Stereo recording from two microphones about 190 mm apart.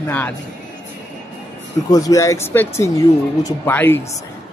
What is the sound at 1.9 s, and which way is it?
A woman's voice, 15° left (ahead or behind).